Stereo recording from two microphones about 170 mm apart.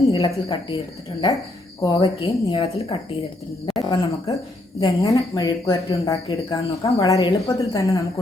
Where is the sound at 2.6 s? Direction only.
35° left (ahead or behind).